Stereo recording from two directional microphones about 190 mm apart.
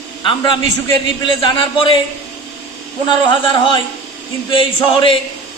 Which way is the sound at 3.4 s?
25° left (ahead or behind).